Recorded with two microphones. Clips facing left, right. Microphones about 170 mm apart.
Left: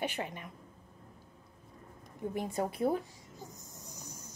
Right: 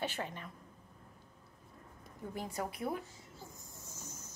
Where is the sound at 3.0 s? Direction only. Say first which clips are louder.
Left 3 dB; 20° left (ahead or behind).